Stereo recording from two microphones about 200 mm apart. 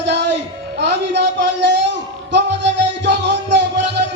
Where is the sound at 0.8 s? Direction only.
60° right (ahead or behind).